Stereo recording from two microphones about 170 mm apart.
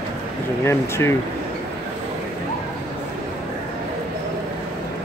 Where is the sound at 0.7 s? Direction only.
15° left (ahead or behind).